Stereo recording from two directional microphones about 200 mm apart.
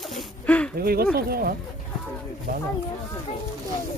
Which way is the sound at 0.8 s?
50° right (ahead or behind).